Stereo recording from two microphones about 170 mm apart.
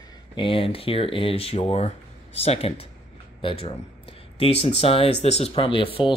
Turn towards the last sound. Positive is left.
turn(degrees=30)  # may be behind; listen again after turning